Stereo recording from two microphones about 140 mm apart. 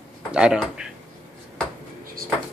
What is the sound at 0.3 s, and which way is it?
Speech, 5° right (ahead or behind).